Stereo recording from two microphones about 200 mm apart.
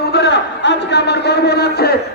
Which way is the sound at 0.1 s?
60° left (ahead or behind).